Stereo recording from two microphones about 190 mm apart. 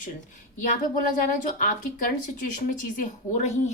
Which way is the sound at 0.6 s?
45° left (ahead or behind).